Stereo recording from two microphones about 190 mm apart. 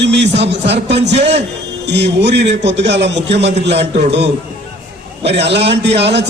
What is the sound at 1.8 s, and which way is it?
A man's voice, 65° right (ahead or behind).